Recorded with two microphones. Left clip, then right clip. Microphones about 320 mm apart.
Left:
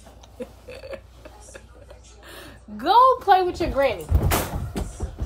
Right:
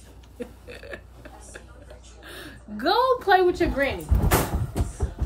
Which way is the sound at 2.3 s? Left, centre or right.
Centre.